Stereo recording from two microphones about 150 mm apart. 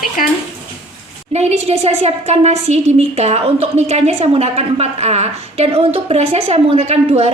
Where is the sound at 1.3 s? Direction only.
45° right (ahead or behind).